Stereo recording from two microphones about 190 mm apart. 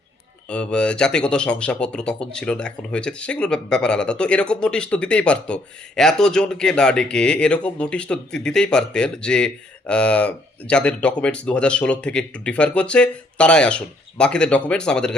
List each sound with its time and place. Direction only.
0.5 s speech: 5° left (ahead or behind)